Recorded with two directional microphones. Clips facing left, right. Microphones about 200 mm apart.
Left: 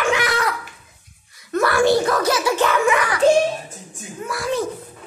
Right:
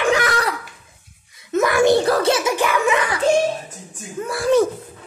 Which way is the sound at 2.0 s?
30° right (ahead or behind).